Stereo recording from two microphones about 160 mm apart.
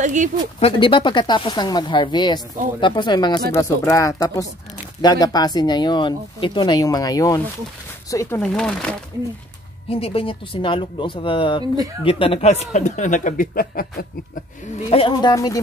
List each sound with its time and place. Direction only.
0.0 s speech: 50° right (ahead or behind)
0.6 s speech: 35° left (ahead or behind)
8.4 s speech: 5° left (ahead or behind)
9.8 s speech: 35° left (ahead or behind); by 13.8 s 65° left (ahead or behind)
14.9 s speech: 35° left (ahead or behind)
15.3 s speech: 20° left (ahead or behind)